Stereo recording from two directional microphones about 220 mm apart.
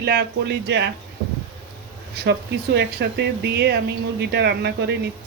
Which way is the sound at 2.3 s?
50° right (ahead or behind).